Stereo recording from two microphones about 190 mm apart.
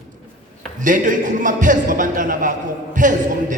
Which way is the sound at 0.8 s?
45° right (ahead or behind).